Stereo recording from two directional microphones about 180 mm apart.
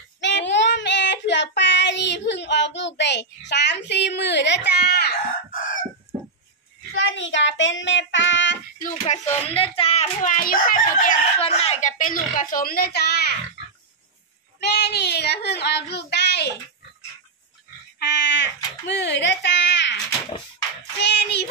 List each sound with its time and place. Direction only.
0.2 s child singing: 80° left
3.0 s a child's voice: 75° left (ahead or behind); by 5.8 s 55° left (ahead or behind)
7.2 s child singing: 90° left
9.0 s a child's voice: 40° left (ahead or behind)
11.4 s a child's voice: 35° left (ahead or behind); by 13.4 s 60° left (ahead or behind)
14.6 s child singing: 70° left (ahead or behind)
17.9 s speech: 80° left
20.1 s a sound: 20° left (ahead or behind)
21.0 s child singing: 70° left (ahead or behind)